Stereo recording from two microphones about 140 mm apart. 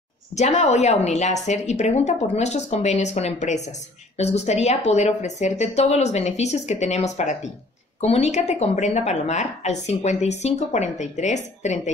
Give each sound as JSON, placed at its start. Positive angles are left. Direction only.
{"t": 0.4, "sound": "a woman's voice", "side_deg": 55}